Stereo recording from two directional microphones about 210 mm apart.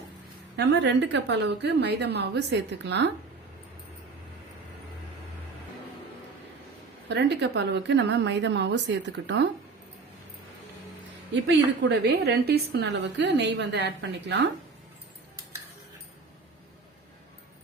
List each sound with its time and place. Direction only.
0.5 s a woman's voice: 55° right (ahead or behind)
7.1 s a woman's voice: 55° right (ahead or behind)
11.8 s a woman's voice: 55° right (ahead or behind)